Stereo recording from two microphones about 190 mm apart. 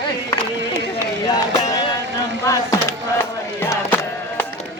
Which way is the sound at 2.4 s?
15° left (ahead or behind).